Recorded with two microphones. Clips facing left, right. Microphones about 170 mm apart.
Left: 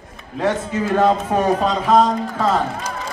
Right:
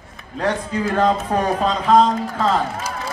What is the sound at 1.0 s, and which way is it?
A man's voice, 5° left (ahead or behind).